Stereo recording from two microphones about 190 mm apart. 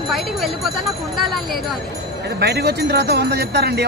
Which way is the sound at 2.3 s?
60° right (ahead or behind).